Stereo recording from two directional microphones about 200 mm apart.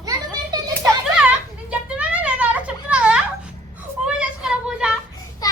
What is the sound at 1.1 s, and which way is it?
Children playing, 5° right (ahead or behind).